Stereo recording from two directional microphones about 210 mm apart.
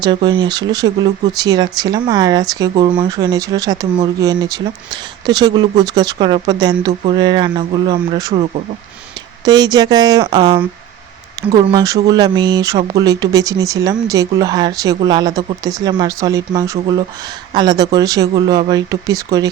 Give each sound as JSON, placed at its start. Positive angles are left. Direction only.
{"t": 0.0, "sound": "speech", "side_deg": -20}
{"t": 9.4, "sound": "speech", "side_deg": -20}